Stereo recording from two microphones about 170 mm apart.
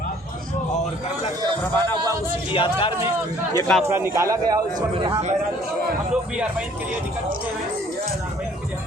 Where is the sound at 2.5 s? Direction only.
30° left (ahead or behind).